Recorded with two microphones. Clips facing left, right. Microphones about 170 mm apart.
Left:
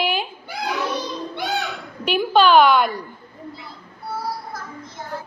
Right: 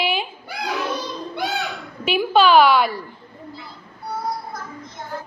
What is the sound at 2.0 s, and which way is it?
A woman's voice, 5° right (ahead or behind).